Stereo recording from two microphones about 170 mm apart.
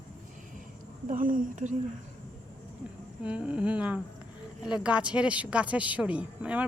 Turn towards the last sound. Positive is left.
turn(degrees=-10)  # may be behind; listen again after turning